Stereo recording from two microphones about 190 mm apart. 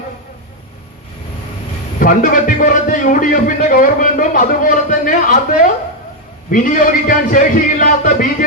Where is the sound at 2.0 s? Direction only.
45° left (ahead or behind).